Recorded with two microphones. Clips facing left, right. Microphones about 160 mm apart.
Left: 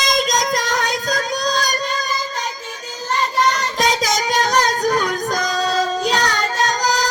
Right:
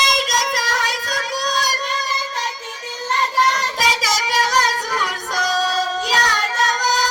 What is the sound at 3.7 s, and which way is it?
Child singing, 5° right (ahead or behind).